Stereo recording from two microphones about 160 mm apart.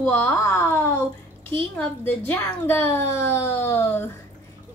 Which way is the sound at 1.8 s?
10° left (ahead or behind).